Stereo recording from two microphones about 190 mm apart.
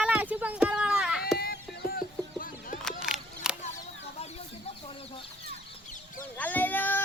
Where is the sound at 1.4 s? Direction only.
50° left (ahead or behind).